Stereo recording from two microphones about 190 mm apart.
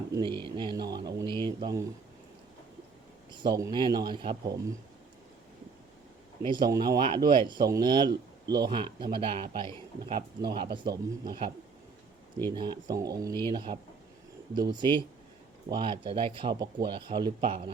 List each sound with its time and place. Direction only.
0.1 s speech: 25° right (ahead or behind)
3.4 s speech: 20° right (ahead or behind)
6.4 s speech: 25° right (ahead or behind)